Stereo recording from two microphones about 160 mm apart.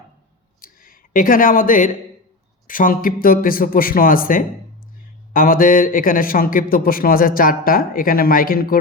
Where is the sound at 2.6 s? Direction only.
60° left (ahead or behind).